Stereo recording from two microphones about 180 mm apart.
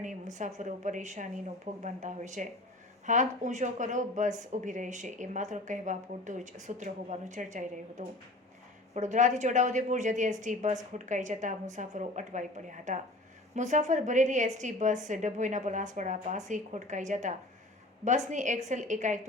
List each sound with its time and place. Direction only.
0.0 s speech: 45° right (ahead or behind)